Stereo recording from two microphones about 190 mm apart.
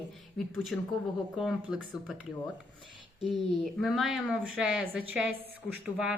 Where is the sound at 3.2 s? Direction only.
Centre (ahead or behind).